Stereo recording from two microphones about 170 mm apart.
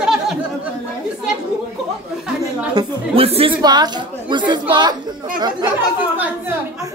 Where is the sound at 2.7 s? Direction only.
35° right (ahead or behind).